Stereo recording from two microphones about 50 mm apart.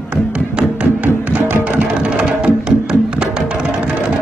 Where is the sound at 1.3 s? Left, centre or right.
Right.